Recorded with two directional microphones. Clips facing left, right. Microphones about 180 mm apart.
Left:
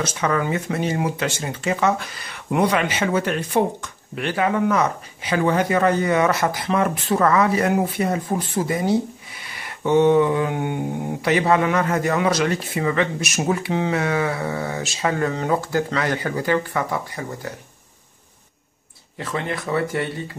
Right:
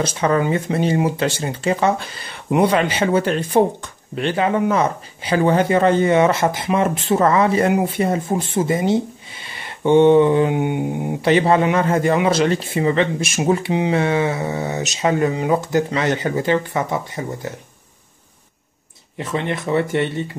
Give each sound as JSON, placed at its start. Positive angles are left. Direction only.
{"t": 0.0, "sound": "speech", "side_deg": -30}
{"t": 10.5, "sound": "mantra", "side_deg": -15}
{"t": 11.2, "sound": "speech", "side_deg": -30}
{"t": 19.1, "sound": "speech", "side_deg": -20}